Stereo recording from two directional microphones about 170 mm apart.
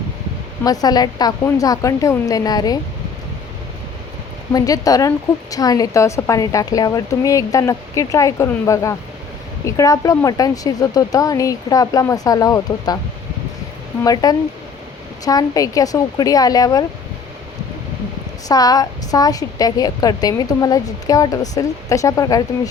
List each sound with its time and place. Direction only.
0.6 s a woman's voice: 20° left (ahead or behind)
4.5 s a woman's voice: 20° left (ahead or behind)
14.0 s a woman's voice: 20° left (ahead or behind)
18.4 s a woman's voice: 20° left (ahead or behind)